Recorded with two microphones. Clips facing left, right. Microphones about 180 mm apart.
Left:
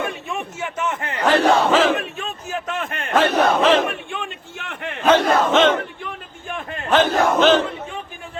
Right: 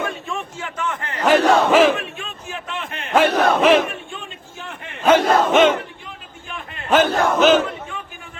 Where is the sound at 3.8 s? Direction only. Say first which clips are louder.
Left 4 dB; 65° left (ahead or behind).